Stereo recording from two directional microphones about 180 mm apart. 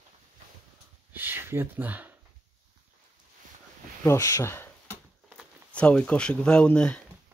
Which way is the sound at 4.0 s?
15° left (ahead or behind).